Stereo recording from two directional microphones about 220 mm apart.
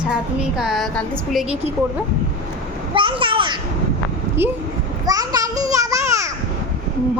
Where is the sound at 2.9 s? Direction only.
20° right (ahead or behind).